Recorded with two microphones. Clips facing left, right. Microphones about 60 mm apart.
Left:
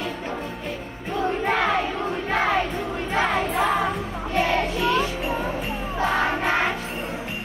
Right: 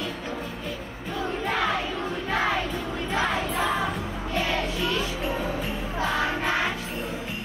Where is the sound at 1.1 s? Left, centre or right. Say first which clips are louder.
Left 5 dB; left.